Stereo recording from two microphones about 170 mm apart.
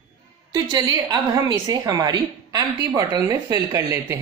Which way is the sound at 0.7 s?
25° right (ahead or behind).